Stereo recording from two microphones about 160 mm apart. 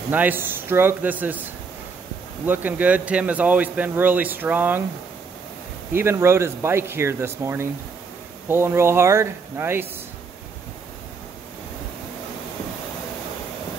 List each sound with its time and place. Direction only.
0.1 s speech: 10° right (ahead or behind)
2.4 s speech: 10° right (ahead or behind)
5.9 s speech: 15° right (ahead or behind)